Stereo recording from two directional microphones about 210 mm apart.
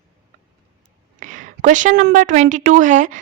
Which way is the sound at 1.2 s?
35° right (ahead or behind).